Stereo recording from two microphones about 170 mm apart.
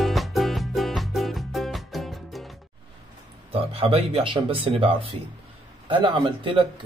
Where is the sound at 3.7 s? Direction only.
35° right (ahead or behind).